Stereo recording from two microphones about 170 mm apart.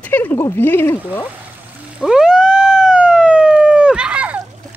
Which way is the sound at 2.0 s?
5° right (ahead or behind).